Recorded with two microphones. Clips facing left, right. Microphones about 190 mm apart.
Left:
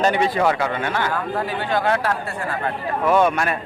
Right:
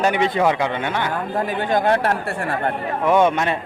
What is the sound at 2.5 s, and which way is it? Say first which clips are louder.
Speech: right 1 dB; 25° right (ahead or behind).